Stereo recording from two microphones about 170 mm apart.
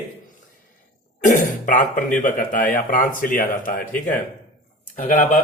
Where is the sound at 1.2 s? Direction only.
50° left (ahead or behind).